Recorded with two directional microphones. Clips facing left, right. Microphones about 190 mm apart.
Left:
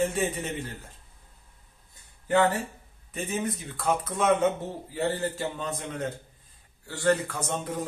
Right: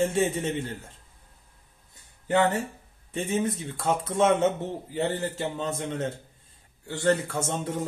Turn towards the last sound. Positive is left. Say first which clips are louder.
# right 2 dB
turn(degrees=-25)  # may be behind; listen again after turning